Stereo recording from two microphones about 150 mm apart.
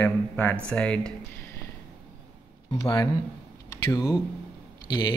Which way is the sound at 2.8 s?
25° left (ahead or behind).